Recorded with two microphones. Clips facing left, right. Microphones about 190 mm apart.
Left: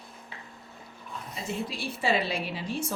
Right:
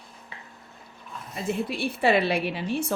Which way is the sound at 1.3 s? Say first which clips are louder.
Right 6 dB; 60° right (ahead or behind).